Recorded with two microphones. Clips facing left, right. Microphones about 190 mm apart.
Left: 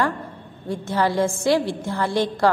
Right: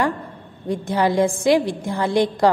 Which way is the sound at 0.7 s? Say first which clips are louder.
Right 2 dB; 15° right (ahead or behind).